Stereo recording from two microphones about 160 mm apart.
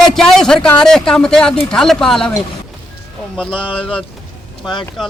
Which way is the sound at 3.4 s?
5° left (ahead or behind).